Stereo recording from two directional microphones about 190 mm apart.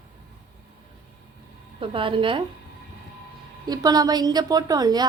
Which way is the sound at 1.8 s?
25° right (ahead or behind).